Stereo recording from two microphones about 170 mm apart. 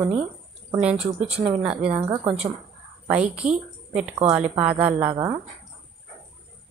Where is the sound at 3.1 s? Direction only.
5° right (ahead or behind).